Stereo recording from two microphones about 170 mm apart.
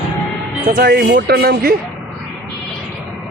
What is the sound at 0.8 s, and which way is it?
Speech, 65° right (ahead or behind).